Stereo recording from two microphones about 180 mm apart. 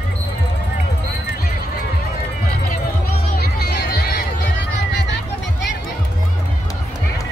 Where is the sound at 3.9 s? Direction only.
60° left (ahead or behind).